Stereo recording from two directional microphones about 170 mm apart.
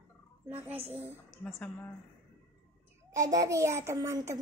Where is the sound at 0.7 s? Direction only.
10° right (ahead or behind).